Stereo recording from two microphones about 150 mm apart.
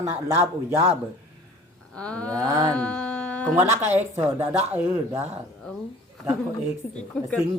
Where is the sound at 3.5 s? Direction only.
50° right (ahead or behind).